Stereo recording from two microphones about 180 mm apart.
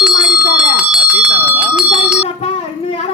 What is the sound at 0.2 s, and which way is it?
Bell, 5° right (ahead or behind).